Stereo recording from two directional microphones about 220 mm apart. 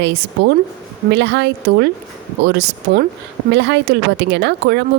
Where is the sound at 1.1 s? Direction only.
50° right (ahead or behind).